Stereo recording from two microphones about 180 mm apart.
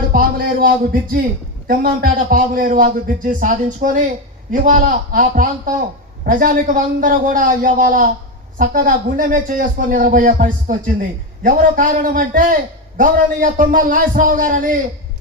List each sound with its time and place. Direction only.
0.1 s a man's voice: 55° right (ahead or behind)